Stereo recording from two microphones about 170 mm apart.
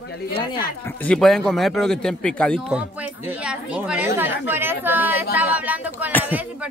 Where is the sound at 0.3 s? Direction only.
30° left (ahead or behind).